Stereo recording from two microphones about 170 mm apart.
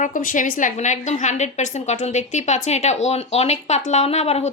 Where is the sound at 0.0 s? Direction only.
50° left (ahead or behind).